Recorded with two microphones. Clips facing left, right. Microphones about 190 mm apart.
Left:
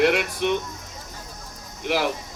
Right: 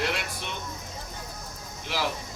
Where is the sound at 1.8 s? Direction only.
55° left (ahead or behind).